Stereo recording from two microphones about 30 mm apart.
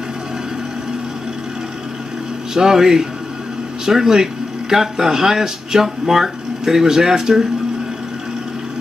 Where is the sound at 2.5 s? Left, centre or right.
Centre.